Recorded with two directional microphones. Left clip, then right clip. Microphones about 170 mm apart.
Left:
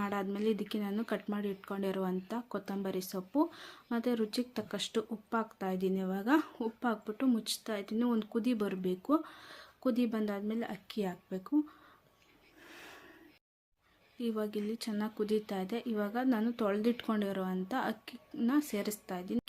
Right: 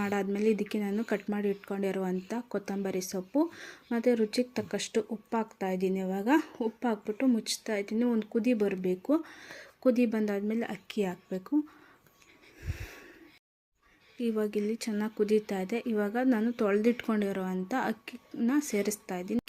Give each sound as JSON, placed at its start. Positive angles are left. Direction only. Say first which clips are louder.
{"t": 0.0, "sound": "speech", "louder": "right 5 dB", "side_deg": -15}
{"t": 12.6, "sound": "snort", "louder": "right 5 dB", "side_deg": -15}
{"t": 14.2, "sound": "speech", "louder": "right 6 dB", "side_deg": -15}